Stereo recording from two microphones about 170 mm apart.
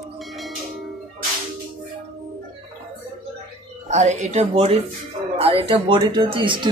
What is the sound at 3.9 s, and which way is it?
Speech, 40° right (ahead or behind).